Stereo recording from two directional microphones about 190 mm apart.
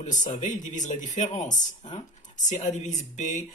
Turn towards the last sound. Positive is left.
turn(degrees=40)  # may be behind; listen again after turning